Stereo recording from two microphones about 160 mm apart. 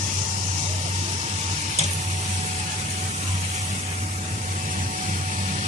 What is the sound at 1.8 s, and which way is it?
Sizzle, 40° right (ahead or behind).